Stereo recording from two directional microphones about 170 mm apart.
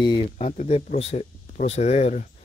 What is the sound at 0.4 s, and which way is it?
Speech, 40° left (ahead or behind).